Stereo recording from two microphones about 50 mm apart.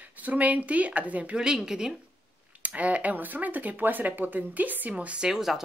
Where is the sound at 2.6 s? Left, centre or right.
Right.